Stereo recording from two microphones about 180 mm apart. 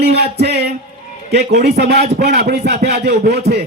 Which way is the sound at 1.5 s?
65° right (ahead or behind).